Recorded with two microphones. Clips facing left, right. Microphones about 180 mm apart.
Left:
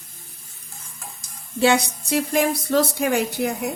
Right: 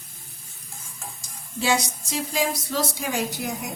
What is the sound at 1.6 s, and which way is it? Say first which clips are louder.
Speech: left 6 dB; 60° left (ahead or behind).